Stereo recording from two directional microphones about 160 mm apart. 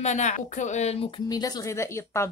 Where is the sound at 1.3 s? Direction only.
25° left (ahead or behind).